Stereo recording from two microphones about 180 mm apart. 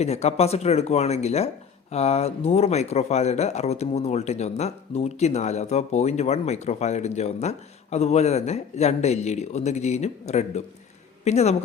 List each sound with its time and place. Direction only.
0.0 s speech: 35° left (ahead or behind)